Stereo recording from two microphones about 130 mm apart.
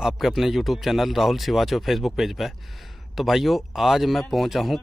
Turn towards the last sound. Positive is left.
turn(degrees=0)  # may be behind; listen again after turning